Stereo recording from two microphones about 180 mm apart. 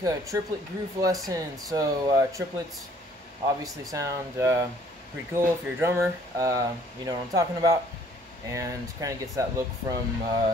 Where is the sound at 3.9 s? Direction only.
15° right (ahead or behind).